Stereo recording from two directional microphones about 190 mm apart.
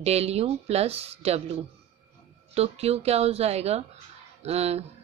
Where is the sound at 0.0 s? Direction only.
35° right (ahead or behind).